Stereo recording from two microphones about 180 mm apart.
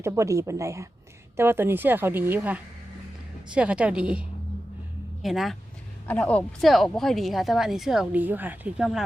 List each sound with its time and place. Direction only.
0.0 s a woman's voice: 15° right (ahead or behind)